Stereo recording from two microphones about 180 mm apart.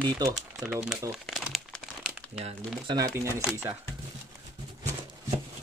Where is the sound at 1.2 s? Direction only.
Centre (ahead or behind).